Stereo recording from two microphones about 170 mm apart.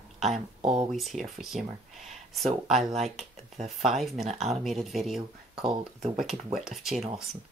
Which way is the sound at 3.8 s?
Centre (ahead or behind).